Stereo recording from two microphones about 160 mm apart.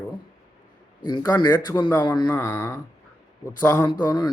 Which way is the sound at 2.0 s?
30° left (ahead or behind).